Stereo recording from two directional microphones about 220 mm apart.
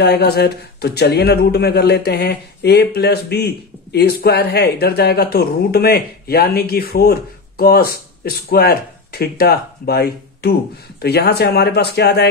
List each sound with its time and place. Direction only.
0.0 s speech: 45° left (ahead or behind)